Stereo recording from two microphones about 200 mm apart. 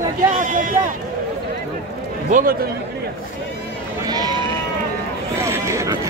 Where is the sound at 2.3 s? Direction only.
40° right (ahead or behind).